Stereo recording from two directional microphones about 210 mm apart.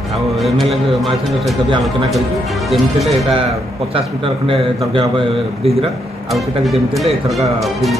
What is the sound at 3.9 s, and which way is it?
A man's voice, 25° right (ahead or behind).